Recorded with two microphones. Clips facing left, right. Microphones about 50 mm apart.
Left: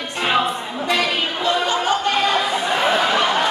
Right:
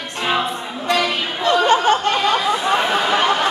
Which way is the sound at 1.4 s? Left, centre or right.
Right.